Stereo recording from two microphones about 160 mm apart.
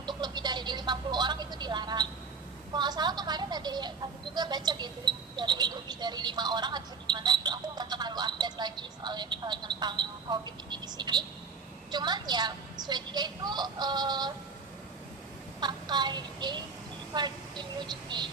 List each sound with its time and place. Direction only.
0.0 s television: 25° right (ahead or behind)
2.7 s speech: 25° right (ahead or behind)
15.6 s child singing: 25° right (ahead or behind)
17.2 s speech: 25° right (ahead or behind)